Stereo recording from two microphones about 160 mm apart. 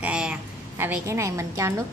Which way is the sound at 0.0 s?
5° right (ahead or behind).